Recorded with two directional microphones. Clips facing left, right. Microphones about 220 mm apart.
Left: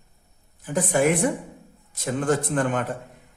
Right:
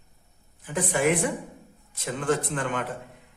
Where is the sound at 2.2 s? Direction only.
45° left (ahead or behind).